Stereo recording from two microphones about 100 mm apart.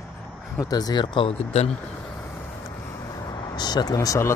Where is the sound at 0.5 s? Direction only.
40° left (ahead or behind).